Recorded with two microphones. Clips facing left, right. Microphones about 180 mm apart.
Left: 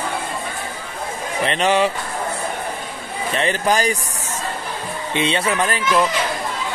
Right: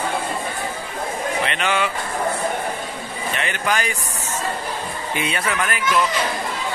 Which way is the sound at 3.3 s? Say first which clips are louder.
Left 5 dB; 35° left (ahead or behind).